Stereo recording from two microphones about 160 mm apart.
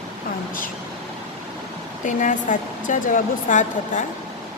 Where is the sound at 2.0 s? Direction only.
50° left (ahead or behind).